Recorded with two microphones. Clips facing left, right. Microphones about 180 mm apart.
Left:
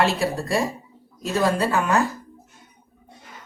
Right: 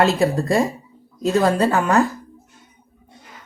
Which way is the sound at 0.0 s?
40° right (ahead or behind).